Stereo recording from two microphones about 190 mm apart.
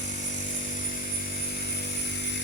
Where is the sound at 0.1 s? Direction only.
40° left (ahead or behind).